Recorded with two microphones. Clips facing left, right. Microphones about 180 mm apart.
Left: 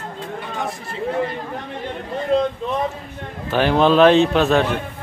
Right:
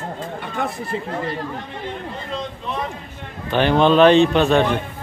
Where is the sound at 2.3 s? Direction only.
55° left (ahead or behind).